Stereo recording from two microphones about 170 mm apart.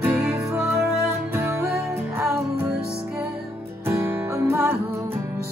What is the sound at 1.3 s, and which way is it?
Music, 15° right (ahead or behind).